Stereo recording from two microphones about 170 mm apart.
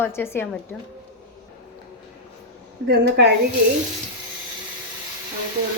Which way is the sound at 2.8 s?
70° right (ahead or behind).